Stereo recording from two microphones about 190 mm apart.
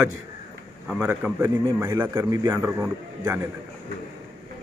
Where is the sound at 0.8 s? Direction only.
5° right (ahead or behind).